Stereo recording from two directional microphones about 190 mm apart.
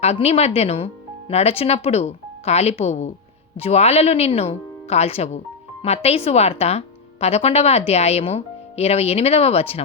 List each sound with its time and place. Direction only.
0.0 s a woman's voice: 35° left (ahead or behind)